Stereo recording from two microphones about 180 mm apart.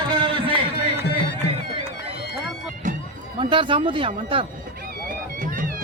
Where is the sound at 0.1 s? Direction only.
25° right (ahead or behind).